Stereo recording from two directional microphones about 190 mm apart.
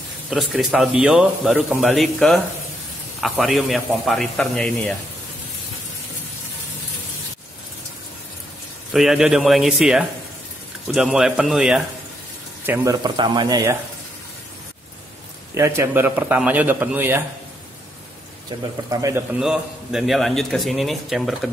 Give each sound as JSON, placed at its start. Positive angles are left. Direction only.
{"t": 0.3, "sound": "speech", "side_deg": 0}
{"t": 8.9, "sound": "a man's voice", "side_deg": 0}
{"t": 13.0, "sound": "a man's voice", "side_deg": -25}
{"t": 15.5, "sound": "a man's voice", "side_deg": -15}
{"t": 18.9, "sound": "a man's voice", "side_deg": -15}
{"t": 19.4, "sound": "speech", "side_deg": -5}